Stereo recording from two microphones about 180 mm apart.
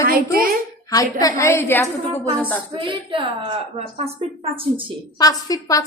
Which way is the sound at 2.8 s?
30° right (ahead or behind).